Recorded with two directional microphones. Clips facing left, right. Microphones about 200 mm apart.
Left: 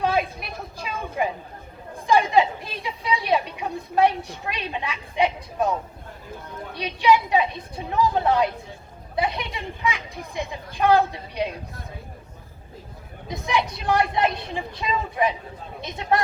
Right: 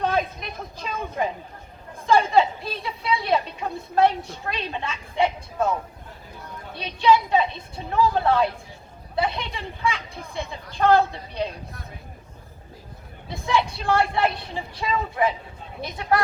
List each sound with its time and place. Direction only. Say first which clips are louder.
0.0 s a sound: left 1 dB; 10° left (ahead or behind)
2.0 s a woman's voice: even; 15° left (ahead or behind)
6.7 s a woman's voice: even; 15° left (ahead or behind)
13.2 s a woman's voice: right 1 dB; 20° left (ahead or behind)